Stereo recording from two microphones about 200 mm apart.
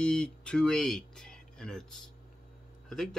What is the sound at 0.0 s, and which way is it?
Speech, 5° left (ahead or behind).